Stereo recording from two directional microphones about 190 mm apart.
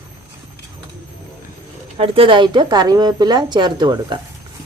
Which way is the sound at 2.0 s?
30° right (ahead or behind).